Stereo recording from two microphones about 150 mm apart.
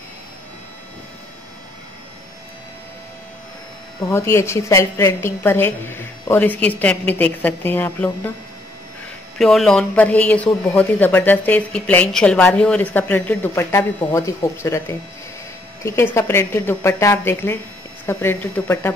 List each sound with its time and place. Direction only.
4.1 s speech: 15° left (ahead or behind)
9.4 s speech: centre (ahead or behind)